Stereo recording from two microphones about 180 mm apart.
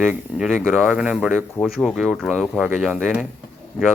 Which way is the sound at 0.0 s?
5° right (ahead or behind).